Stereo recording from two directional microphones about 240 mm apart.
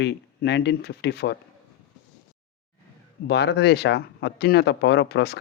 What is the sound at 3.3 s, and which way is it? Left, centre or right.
Speech, left.